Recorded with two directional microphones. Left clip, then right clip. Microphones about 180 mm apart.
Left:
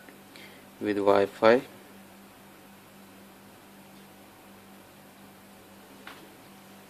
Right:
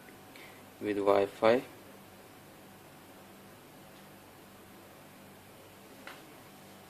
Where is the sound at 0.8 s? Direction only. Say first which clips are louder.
Left 4 dB; 20° left (ahead or behind).